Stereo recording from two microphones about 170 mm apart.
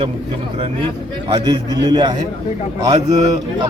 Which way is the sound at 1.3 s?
25° right (ahead or behind).